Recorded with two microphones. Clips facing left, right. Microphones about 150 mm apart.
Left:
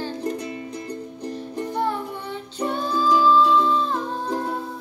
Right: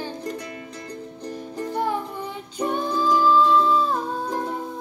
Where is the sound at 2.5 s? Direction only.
15° right (ahead or behind).